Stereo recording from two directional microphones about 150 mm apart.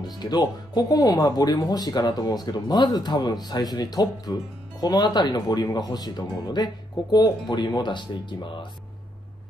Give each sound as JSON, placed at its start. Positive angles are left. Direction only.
{"t": 0.0, "sound": "speech", "side_deg": 30}